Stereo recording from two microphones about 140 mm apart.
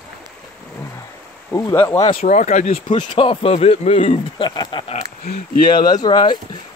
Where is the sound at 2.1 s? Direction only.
65° left (ahead or behind).